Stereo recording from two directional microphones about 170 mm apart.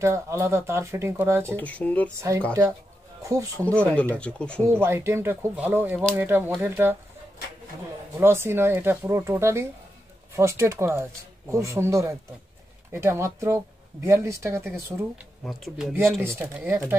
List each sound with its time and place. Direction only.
0.0 s speech: 15° right (ahead or behind)
1.6 s speech: 10° left (ahead or behind)
2.1 s speech: 15° right (ahead or behind)
3.9 s speech: 10° left (ahead or behind)
4.6 s speech: 15° right (ahead or behind)
8.2 s speech: 15° right (ahead or behind)
15.4 s speech: centre (ahead or behind)
16.2 s speech: 15° right (ahead or behind)